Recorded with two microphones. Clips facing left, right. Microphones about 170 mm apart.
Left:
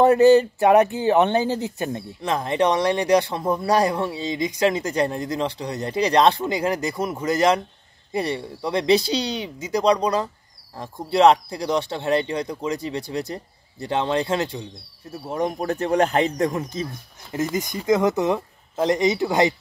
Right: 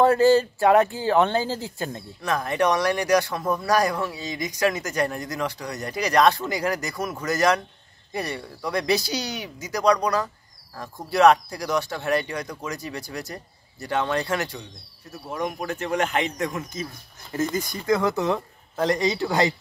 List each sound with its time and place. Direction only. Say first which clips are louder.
0.0 s speech: left 3 dB; 20° left (ahead or behind)
17.6 s speech: left 5 dB; 20° left (ahead or behind)